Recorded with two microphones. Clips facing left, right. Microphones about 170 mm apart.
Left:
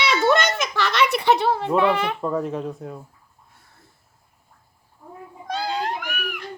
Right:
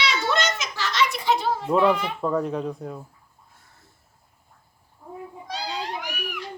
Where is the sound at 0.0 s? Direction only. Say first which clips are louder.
Left 5 dB; 55° left (ahead or behind).